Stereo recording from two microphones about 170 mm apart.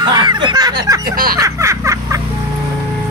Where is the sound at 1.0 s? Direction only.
60° right (ahead or behind).